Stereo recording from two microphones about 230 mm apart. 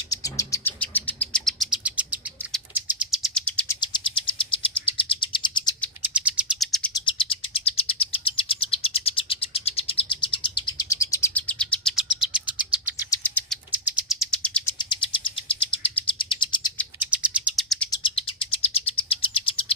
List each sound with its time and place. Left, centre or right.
0.1 s bird: centre
3.8 s bird: left
6.1 s bird: centre
6.9 s bird: left; by 12.6 s centre
13.1 s chirp: centre
13.7 s bird: centre
14.8 s bird: left
17.0 s bird: centre
18.0 s bird: left